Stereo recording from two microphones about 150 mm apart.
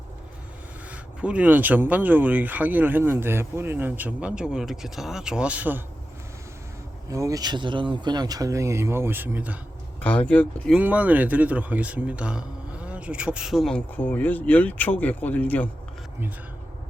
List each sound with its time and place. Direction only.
0.9 s speech: 10° right (ahead or behind)
7.1 s speech: 20° right (ahead or behind)
10.0 s speech: 10° left (ahead or behind)
10.8 s speech: 10° right (ahead or behind); by 15.7 s 10° left (ahead or behind)